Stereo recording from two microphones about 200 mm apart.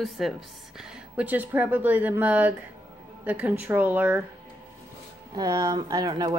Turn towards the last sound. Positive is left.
turn(degrees=-20)  # may be behind; listen again after turning